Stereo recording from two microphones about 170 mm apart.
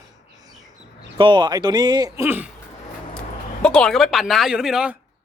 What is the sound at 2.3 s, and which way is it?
Speech, 10° right (ahead or behind).